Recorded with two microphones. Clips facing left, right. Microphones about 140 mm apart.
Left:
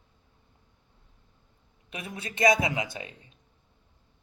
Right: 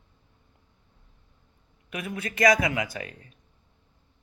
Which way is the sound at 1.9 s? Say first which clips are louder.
Right 5 dB; 30° left (ahead or behind).